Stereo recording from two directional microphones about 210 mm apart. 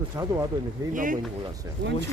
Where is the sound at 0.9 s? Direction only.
40° right (ahead or behind).